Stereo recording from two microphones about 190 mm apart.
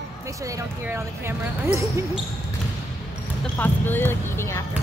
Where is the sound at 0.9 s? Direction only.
10° right (ahead or behind).